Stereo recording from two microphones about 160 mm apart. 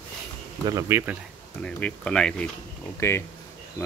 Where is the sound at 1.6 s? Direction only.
5° left (ahead or behind).